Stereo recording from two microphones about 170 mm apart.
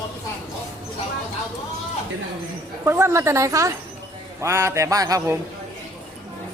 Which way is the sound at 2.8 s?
15° right (ahead or behind).